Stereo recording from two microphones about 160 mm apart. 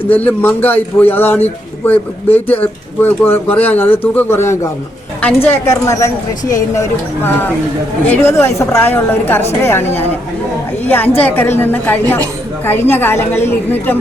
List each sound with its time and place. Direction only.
0.1 s speech: 10° left (ahead or behind)
8.1 s speech: 15° left (ahead or behind)